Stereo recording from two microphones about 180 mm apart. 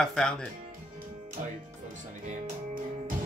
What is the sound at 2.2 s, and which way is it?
Music, 40° right (ahead or behind).